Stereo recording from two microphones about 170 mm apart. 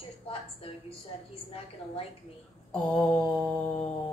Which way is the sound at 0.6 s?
35° left (ahead or behind).